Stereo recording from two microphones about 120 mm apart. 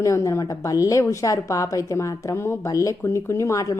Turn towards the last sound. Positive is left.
turn(degrees=25)  # may be behind; listen again after turning